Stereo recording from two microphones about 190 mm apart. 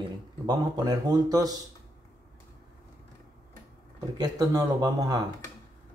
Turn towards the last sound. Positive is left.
turn(degrees=-20)  # may be behind; listen again after turning